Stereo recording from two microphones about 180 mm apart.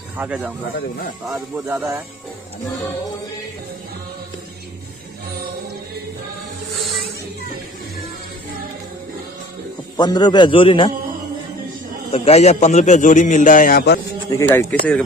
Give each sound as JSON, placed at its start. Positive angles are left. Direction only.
{"t": 0.2, "sound": "speech", "side_deg": -5}
{"t": 1.6, "sound": "speech", "side_deg": -15}
{"t": 9.9, "sound": "a man's voice", "side_deg": 25}
{"t": 12.1, "sound": "a man's voice", "side_deg": 35}
{"t": 14.3, "sound": "speech", "side_deg": 15}